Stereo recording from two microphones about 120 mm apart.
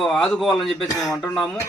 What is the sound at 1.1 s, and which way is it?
Speech, 25° left (ahead or behind).